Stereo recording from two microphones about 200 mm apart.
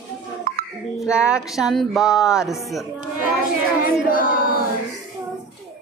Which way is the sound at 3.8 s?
45° left (ahead or behind).